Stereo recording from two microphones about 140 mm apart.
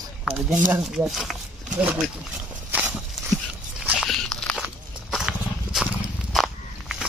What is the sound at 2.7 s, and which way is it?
Walk, 10° right (ahead or behind).